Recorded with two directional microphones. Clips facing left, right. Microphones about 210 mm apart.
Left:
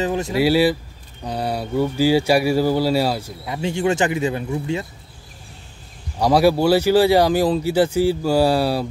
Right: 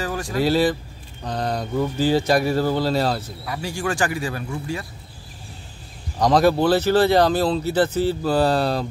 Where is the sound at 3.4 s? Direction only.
20° left (ahead or behind).